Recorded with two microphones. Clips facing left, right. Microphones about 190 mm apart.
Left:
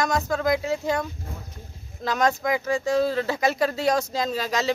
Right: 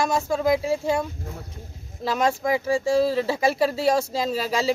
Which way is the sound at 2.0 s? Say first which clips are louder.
Even; 5° right (ahead or behind).